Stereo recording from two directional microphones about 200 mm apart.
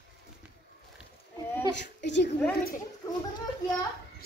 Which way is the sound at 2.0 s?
60° left (ahead or behind).